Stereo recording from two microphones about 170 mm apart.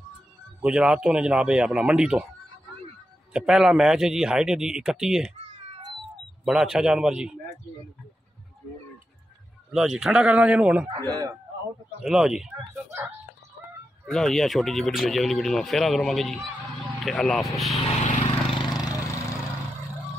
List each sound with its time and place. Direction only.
0.6 s speech: 5° right (ahead or behind)
3.3 s speech: 5° right (ahead or behind)
6.4 s speech: 5° right (ahead or behind)
9.7 s speech: centre (ahead or behind)
11.0 s speech: 20° right (ahead or behind)
12.0 s speech: 5° right (ahead or behind)
14.1 s speech: centre (ahead or behind)
17.8 s vehicle: 40° left (ahead or behind); by 19.3 s 20° left (ahead or behind)